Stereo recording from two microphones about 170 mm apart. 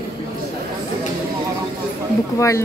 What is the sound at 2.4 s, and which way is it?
Speech, 15° left (ahead or behind).